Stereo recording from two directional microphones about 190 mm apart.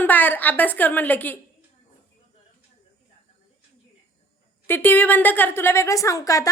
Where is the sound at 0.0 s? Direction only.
10° left (ahead or behind).